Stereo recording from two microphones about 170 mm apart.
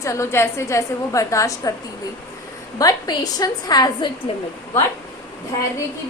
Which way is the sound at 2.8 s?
20° left (ahead or behind).